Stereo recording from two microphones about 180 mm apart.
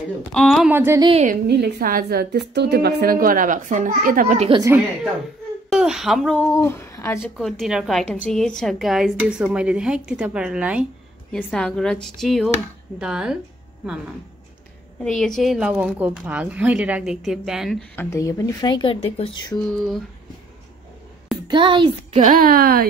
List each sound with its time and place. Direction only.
0.3 s a woman's voice: centre (ahead or behind)
0.7 s speech: 15° right (ahead or behind)
1.2 s a woman's voice: 60° right (ahead or behind)
4.4 s a woman's voice: 25° right (ahead or behind)
5.7 s speech: 5° right (ahead or behind); by 7.2 s 15° left (ahead or behind)
7.2 s a woman's voice: centre (ahead or behind)
15.0 s a woman's voice: 5° left (ahead or behind)
17.9 s speech: 15° left (ahead or behind); by 19.5 s 35° left (ahead or behind)
21.5 s a child's voice: 25° right (ahead or behind)
22.2 s a woman's voice: 55° right (ahead or behind)